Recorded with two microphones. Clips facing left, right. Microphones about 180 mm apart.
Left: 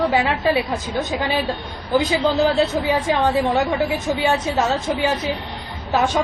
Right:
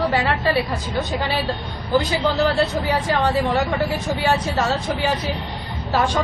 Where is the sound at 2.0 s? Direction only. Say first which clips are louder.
Left 2 dB; 20° left (ahead or behind).